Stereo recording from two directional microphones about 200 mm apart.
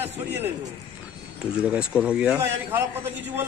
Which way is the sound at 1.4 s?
5° right (ahead or behind).